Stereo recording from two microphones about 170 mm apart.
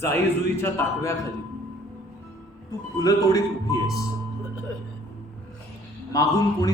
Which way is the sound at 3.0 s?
20° left (ahead or behind).